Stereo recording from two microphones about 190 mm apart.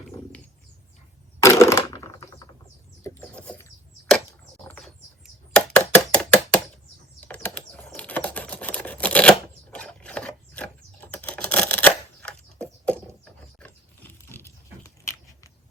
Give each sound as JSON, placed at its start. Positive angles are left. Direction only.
{"t": 1.4, "sound": "a sound", "side_deg": 15}
{"t": 3.0, "sound": "a sound", "side_deg": 10}
{"t": 7.2, "sound": "typing", "side_deg": 10}
{"t": 7.9, "sound": "camera", "side_deg": 5}
{"t": 9.7, "sound": "typing", "side_deg": 5}
{"t": 13.6, "sound": "biting", "side_deg": 10}